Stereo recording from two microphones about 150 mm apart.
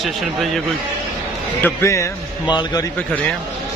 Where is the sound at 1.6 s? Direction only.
20° left (ahead or behind).